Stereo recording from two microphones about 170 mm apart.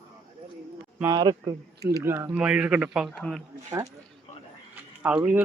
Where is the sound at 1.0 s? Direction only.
25° right (ahead or behind); by 3.1 s 5° right (ahead or behind).